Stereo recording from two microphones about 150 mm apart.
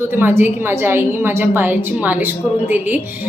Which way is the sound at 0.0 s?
15° right (ahead or behind).